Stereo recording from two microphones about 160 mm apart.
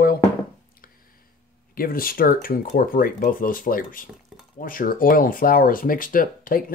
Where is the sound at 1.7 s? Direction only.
65° left (ahead or behind).